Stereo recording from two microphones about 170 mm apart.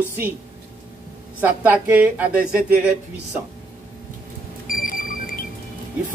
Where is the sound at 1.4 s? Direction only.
10° right (ahead or behind).